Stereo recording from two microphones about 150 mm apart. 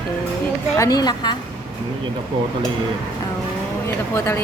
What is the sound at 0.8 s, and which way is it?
Speech, 25° left (ahead or behind).